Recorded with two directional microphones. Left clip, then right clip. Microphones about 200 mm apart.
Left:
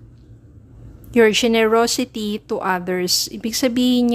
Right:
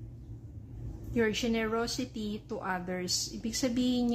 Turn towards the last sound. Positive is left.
turn(degrees=45)  # may be behind; listen again after turning